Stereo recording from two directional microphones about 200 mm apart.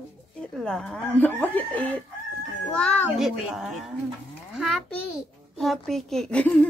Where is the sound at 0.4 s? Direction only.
5° left (ahead or behind).